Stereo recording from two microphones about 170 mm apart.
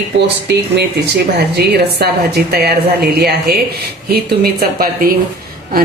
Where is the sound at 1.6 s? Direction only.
70° right (ahead or behind).